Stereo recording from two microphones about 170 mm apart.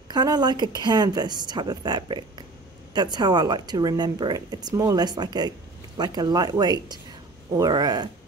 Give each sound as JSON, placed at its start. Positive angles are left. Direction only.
{"t": 0.1, "sound": "speech", "side_deg": -25}